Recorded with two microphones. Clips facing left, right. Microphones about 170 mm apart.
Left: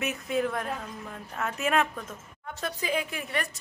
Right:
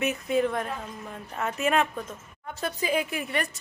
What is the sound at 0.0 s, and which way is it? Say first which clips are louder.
A woman's voice: right 3 dB; centre (ahead or behind).